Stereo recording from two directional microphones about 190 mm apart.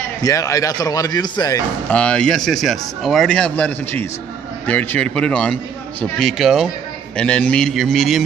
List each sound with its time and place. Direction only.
0.2 s speech: 20° left (ahead or behind)
1.9 s speech: 5° left (ahead or behind)